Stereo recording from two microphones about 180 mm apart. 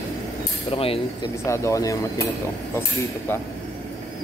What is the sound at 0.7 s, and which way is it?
Speech, 30° left (ahead or behind).